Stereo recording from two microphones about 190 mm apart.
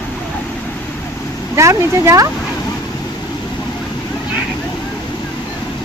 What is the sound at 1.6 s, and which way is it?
Speech, 15° right (ahead or behind).